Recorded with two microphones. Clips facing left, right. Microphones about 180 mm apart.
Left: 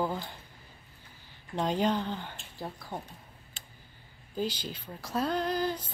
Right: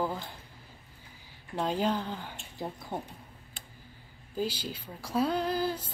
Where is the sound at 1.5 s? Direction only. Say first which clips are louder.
Left 1 dB; 5° right (ahead or behind).